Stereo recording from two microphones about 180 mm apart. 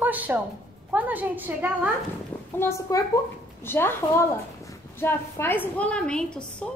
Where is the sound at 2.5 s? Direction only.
15° left (ahead or behind).